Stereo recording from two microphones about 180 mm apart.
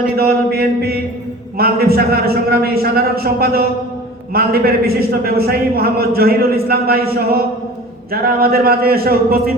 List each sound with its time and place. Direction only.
0.2 s a man's voice: 60° right (ahead or behind)